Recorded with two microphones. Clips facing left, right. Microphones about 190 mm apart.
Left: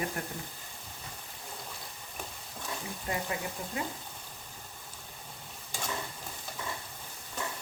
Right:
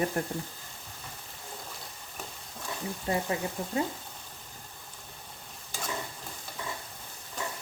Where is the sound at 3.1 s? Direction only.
30° right (ahead or behind).